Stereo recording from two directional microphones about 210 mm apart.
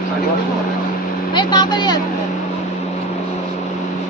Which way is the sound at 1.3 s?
20° left (ahead or behind).